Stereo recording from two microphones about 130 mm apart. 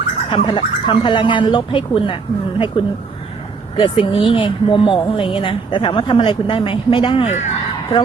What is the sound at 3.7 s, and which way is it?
Speech, 40° left (ahead or behind).